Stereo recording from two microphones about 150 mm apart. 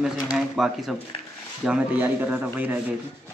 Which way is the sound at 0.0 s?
5° right (ahead or behind).